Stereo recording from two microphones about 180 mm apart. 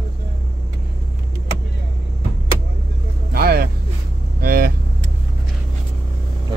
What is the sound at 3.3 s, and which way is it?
Vehicle, 55° right (ahead or behind).